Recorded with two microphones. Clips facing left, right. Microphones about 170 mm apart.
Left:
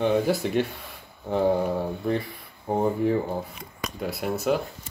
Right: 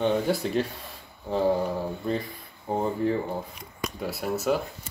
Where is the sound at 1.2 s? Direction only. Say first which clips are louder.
Left 1 dB; 20° left (ahead or behind).